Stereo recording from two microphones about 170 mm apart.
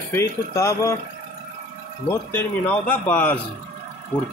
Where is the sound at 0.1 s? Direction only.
15° left (ahead or behind).